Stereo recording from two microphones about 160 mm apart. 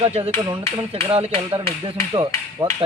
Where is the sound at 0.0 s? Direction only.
40° right (ahead or behind).